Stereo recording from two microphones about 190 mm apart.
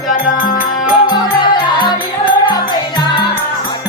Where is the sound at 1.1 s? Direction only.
20° left (ahead or behind).